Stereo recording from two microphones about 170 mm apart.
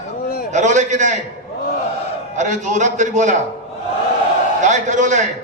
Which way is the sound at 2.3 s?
45° right (ahead or behind).